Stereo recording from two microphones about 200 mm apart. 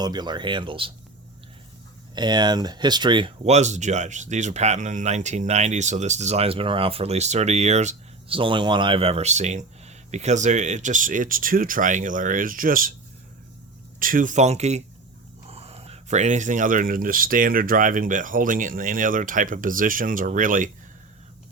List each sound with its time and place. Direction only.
0.0 s speech: 20° right (ahead or behind)
2.1 s speech: 20° right (ahead or behind); by 12.9 s 45° right (ahead or behind)
14.0 s speech: 45° right (ahead or behind)